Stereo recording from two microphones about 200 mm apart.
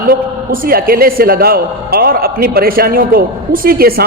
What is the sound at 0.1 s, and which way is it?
A man's voice, 45° right (ahead or behind).